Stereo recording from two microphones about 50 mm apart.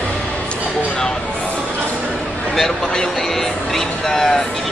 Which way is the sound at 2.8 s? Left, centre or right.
Centre.